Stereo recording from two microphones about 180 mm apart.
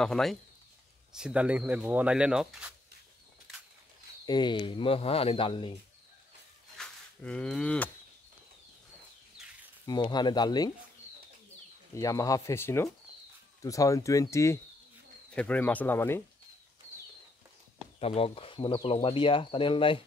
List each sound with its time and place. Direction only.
0.0 s speech: centre (ahead or behind)
4.3 s speech: 25° left (ahead or behind)
6.8 s speech: 5° left (ahead or behind)
9.8 s speech: 25° left (ahead or behind)
11.9 s speech: 20° left (ahead or behind)
17.9 s speech: 30° left (ahead or behind)